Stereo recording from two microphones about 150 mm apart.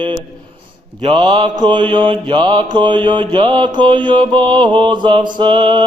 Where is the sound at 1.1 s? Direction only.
30° right (ahead or behind).